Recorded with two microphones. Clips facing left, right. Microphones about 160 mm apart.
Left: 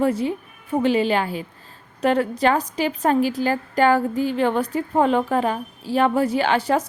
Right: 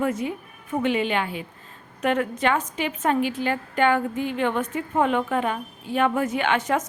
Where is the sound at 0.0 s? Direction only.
30° left (ahead or behind).